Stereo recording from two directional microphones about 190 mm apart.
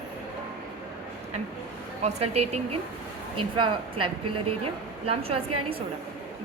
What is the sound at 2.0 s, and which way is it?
A woman's voice, 35° right (ahead or behind).